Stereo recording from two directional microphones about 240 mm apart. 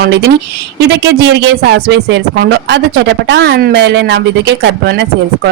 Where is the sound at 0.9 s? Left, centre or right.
Right.